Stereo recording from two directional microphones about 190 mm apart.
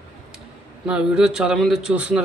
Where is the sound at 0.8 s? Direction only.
5° right (ahead or behind).